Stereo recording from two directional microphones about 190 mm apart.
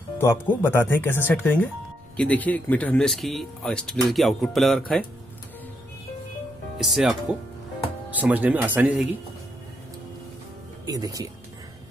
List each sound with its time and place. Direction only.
0.5 s speech: 10° left (ahead or behind)
6.8 s speech: centre (ahead or behind)
10.9 s speech: 20° right (ahead or behind)